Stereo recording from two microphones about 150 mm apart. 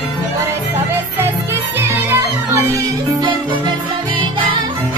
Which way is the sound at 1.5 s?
15° right (ahead or behind).